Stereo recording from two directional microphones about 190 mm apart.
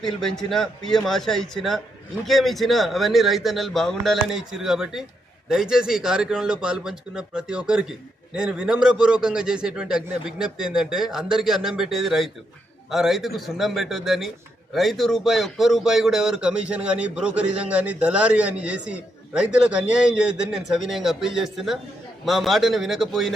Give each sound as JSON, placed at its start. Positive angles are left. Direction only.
{"t": 0.0, "sound": "a man's voice", "side_deg": 0}